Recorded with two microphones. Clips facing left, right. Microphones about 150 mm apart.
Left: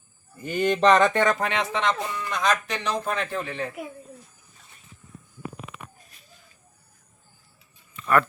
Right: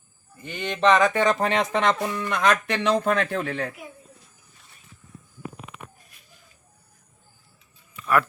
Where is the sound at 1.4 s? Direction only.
35° right (ahead or behind).